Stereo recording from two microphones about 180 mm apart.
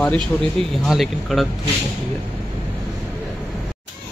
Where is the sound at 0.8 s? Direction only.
Centre (ahead or behind).